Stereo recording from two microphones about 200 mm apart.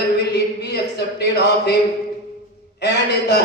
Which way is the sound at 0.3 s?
55° left (ahead or behind).